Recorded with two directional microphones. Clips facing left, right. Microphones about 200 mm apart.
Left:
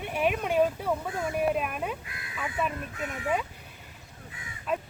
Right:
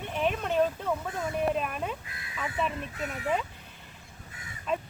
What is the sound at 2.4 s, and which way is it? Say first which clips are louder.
Speech: even; 5° left (ahead or behind).